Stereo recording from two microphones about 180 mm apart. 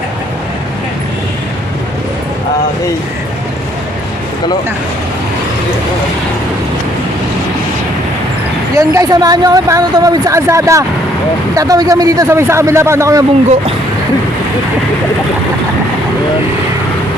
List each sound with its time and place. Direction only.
8.7 s speech: 20° right (ahead or behind)